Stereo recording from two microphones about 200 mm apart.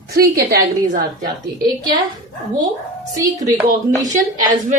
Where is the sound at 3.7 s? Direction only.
40° right (ahead or behind).